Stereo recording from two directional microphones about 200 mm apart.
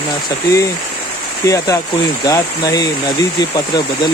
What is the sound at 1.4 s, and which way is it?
Speech, 15° left (ahead or behind).